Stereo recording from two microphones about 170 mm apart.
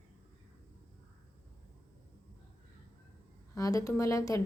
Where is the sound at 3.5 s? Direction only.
20° left (ahead or behind).